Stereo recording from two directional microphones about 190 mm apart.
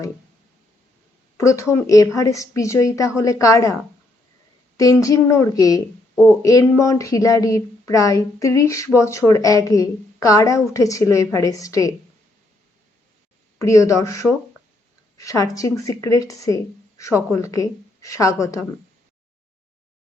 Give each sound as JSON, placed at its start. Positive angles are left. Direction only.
{"t": 1.4, "sound": "a woman's voice", "side_deg": 15}
{"t": 4.8, "sound": "a woman's voice", "side_deg": 15}
{"t": 13.6, "sound": "a woman's voice", "side_deg": 15}